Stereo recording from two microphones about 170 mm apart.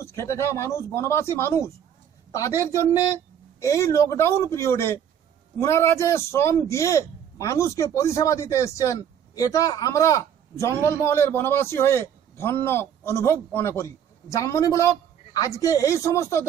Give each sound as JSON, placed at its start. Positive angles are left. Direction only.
{"t": 0.0, "sound": "a man's voice", "side_deg": 15}